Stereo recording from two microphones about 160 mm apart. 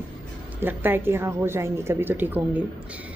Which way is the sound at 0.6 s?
10° right (ahead or behind).